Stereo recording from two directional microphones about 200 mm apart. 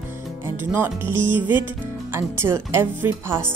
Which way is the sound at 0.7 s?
10° right (ahead or behind).